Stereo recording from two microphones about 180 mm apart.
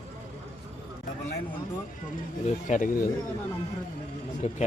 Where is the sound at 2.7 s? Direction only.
45° left (ahead or behind).